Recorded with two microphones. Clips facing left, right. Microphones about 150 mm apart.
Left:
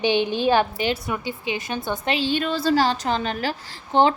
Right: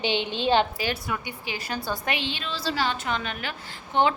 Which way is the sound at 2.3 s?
50° left (ahead or behind).